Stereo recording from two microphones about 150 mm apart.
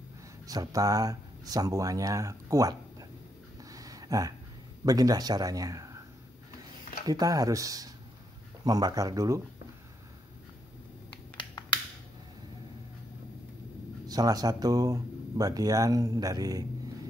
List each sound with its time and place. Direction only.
0.5 s speech: 25° right (ahead or behind)
3.7 s a sound: 25° right (ahead or behind)
4.8 s speech: 25° right (ahead or behind)
7.1 s speech: 25° right (ahead or behind)
11.3 s finger snapping: 30° left (ahead or behind)
14.0 s speech: 25° right (ahead or behind)